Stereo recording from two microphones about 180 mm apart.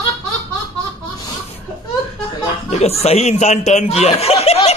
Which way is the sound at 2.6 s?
35° left (ahead or behind).